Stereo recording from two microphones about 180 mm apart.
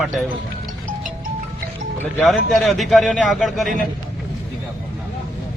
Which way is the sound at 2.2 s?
Centre (ahead or behind).